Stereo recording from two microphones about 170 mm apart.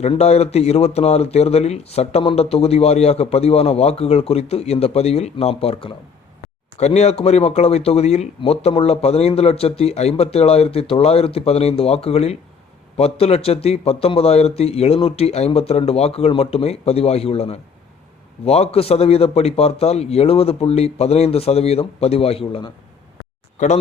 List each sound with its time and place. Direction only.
0.0 s speech: 40° left (ahead or behind)
23.6 s speech: 45° left (ahead or behind)